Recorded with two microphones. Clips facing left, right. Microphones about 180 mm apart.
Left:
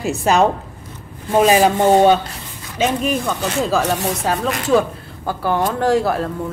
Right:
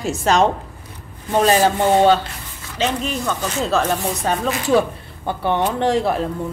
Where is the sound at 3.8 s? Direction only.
75° left (ahead or behind).